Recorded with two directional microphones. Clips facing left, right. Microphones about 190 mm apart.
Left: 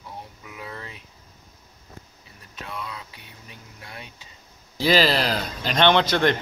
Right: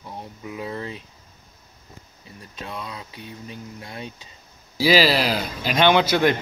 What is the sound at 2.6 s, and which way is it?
Speech, 25° right (ahead or behind).